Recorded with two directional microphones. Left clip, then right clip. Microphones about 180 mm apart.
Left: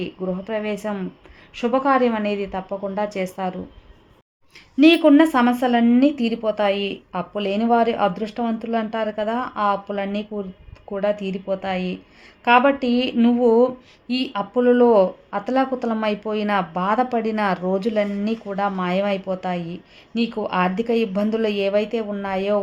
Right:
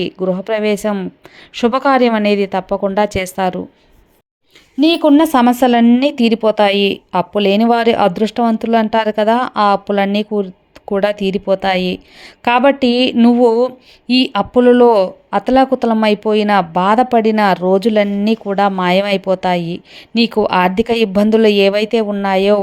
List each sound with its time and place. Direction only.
0.0 s speech: 35° right (ahead or behind)
4.9 s speech: 25° right (ahead or behind); by 22.6 s 40° right (ahead or behind)